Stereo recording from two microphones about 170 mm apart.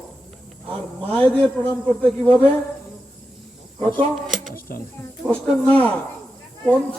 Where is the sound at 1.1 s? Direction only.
5° left (ahead or behind).